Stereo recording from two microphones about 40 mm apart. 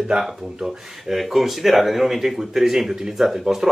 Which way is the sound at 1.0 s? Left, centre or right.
Centre.